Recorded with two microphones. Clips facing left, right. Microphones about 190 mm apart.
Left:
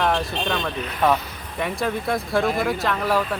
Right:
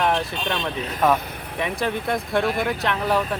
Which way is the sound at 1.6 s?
Centre (ahead or behind).